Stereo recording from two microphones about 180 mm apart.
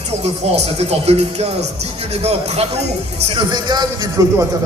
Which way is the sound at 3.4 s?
25° right (ahead or behind).